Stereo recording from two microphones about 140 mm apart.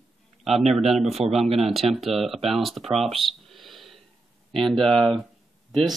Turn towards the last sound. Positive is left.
turn(degrees=0)  # may be behind; listen again after turning